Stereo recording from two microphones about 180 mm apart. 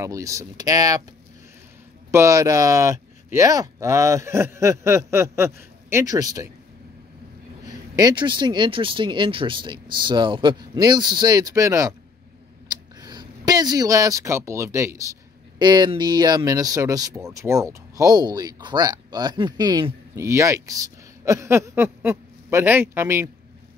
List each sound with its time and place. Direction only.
0.0 s speech: 15° right (ahead or behind)
2.0 s speech: 15° right (ahead or behind)
7.6 s speech: 20° right (ahead or behind)
12.6 s a sound: 25° right (ahead or behind)
15.6 s speech: 25° right (ahead or behind)